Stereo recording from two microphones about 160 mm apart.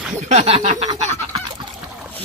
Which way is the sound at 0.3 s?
40° right (ahead or behind).